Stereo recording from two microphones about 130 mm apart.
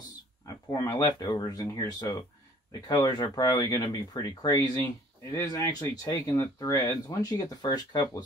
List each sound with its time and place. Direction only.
0.7 s speech: 25° left (ahead or behind)